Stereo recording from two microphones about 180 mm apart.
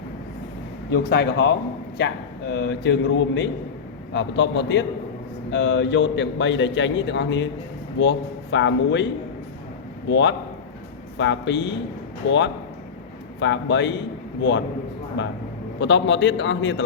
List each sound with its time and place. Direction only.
0.9 s speech: 65° left (ahead or behind)
2.5 s a man's voice: 85° left
10.1 s a man's voice: 80° left
13.4 s a man's voice: 90° left
15.2 s a man's voice: 90° left